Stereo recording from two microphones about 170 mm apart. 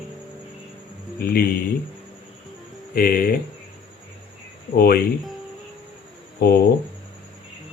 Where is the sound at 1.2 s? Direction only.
60° left (ahead or behind).